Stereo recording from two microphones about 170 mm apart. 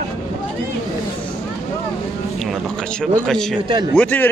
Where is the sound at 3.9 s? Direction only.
10° left (ahead or behind).